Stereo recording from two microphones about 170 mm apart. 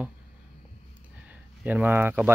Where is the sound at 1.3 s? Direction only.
10° right (ahead or behind).